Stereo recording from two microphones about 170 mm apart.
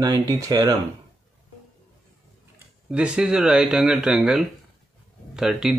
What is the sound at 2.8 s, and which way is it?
Speech, 5° right (ahead or behind).